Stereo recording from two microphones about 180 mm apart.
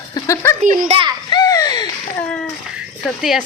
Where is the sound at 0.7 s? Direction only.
35° right (ahead or behind).